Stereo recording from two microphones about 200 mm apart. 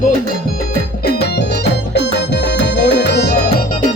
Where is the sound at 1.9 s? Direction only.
60° left (ahead or behind).